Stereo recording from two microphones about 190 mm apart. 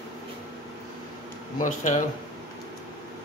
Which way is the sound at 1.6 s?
40° left (ahead or behind).